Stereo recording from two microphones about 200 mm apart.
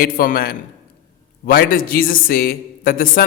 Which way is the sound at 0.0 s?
45° left (ahead or behind).